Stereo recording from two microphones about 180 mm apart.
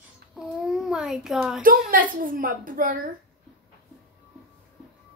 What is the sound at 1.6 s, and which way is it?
A woman's voice, 50° right (ahead or behind).